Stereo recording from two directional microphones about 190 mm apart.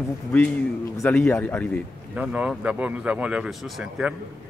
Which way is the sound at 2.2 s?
5° right (ahead or behind).